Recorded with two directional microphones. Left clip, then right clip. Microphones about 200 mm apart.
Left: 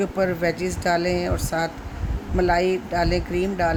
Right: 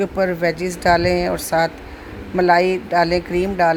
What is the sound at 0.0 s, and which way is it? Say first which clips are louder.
Speech: right 4 dB; 10° right (ahead or behind).